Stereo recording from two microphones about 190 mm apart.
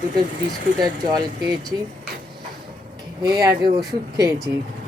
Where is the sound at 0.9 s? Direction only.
20° right (ahead or behind).